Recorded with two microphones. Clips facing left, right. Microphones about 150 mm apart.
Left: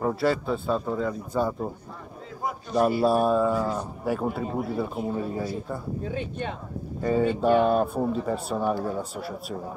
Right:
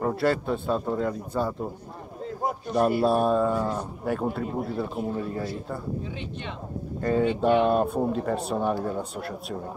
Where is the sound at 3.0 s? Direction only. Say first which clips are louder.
Even; 5° left (ahead or behind).